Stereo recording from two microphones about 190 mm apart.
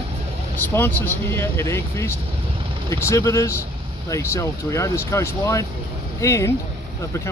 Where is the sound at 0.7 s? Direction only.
10° left (ahead or behind).